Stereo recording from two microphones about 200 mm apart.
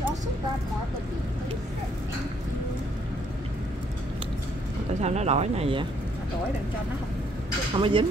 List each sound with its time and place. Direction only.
5.0 s speech: 35° right (ahead or behind)
7.7 s speech: 25° right (ahead or behind)